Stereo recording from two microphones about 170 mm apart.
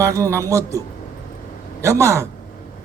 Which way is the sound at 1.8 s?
15° right (ahead or behind).